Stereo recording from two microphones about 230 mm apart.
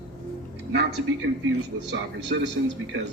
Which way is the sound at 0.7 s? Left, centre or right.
Right.